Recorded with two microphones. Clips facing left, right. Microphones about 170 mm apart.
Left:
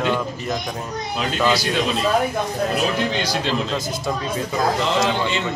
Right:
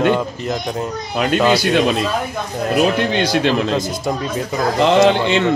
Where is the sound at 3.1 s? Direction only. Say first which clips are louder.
Right 6 dB; 60° right (ahead or behind).